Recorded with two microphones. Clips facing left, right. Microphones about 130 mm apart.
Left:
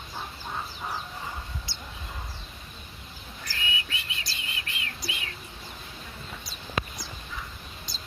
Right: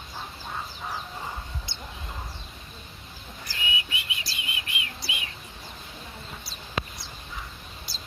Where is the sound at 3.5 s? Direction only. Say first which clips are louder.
Right 1 dB; 15° right (ahead or behind).